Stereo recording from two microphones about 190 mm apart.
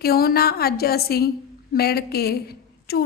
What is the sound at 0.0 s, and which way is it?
A woman's voice, 55° left (ahead or behind).